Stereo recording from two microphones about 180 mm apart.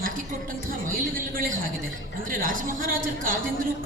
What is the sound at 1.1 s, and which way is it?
A man's voice, 50° right (ahead or behind).